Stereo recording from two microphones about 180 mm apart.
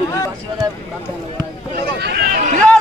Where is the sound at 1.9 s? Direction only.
65° right (ahead or behind).